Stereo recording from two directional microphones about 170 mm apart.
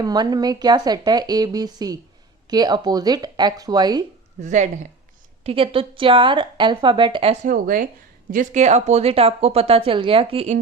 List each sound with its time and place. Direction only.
0.0 s a woman's voice: 25° right (ahead or behind)
4.4 s a woman's voice: 45° right (ahead or behind)
7.4 s speech: 55° right (ahead or behind)